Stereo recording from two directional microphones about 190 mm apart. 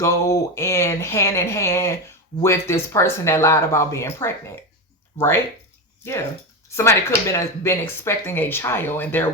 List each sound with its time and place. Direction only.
0.0 s speech: 15° left (ahead or behind)
6.7 s speech: 15° left (ahead or behind)